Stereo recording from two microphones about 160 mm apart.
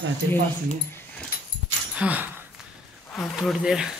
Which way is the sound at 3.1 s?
Centre (ahead or behind).